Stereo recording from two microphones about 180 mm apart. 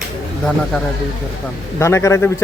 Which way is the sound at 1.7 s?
15° left (ahead or behind).